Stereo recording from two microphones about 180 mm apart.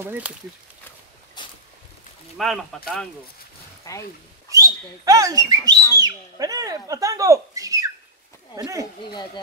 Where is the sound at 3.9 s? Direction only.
20° left (ahead or behind).